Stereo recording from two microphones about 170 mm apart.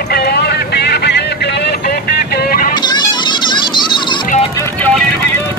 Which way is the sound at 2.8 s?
25° left (ahead or behind).